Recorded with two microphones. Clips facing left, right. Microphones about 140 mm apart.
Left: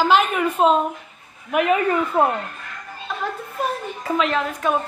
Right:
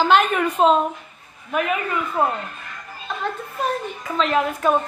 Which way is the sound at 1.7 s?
25° left (ahead or behind).